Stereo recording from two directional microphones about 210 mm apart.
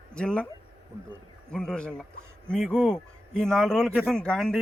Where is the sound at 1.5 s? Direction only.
5° left (ahead or behind).